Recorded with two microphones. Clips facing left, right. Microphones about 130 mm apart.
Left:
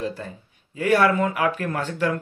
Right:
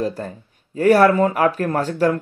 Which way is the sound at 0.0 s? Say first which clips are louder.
Right 5 dB; 45° right (ahead or behind).